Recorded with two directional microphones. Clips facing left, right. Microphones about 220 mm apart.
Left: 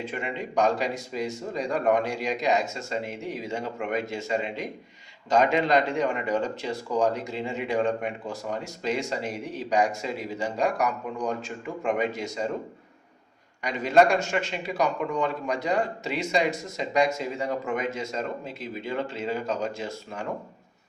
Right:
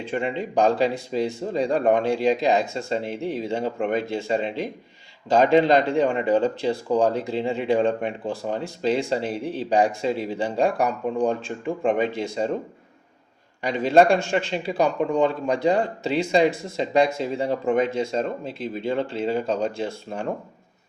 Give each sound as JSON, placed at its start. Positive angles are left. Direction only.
{"t": 0.0, "sound": "speech", "side_deg": -30}
{"t": 13.6, "sound": "speech", "side_deg": -30}